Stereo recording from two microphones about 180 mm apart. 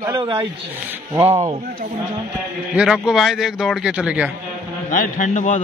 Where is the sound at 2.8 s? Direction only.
5° right (ahead or behind).